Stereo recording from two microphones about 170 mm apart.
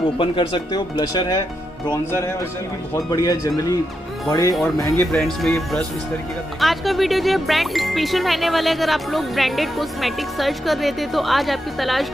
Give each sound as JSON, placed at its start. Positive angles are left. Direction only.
{"t": 0.2, "sound": "speech", "side_deg": 30}
{"t": 3.1, "sound": "speech", "side_deg": 20}
{"t": 5.4, "sound": "speech", "side_deg": 0}